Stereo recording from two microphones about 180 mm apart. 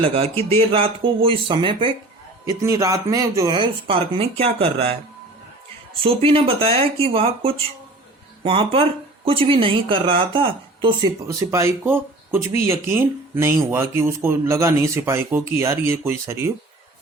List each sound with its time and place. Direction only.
0.0 s speech: 30° right (ahead or behind)
6.0 s speech: 30° right (ahead or behind); by 16.5 s 15° right (ahead or behind)